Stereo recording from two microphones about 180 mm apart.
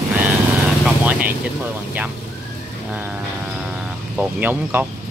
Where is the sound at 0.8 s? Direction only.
10° right (ahead or behind).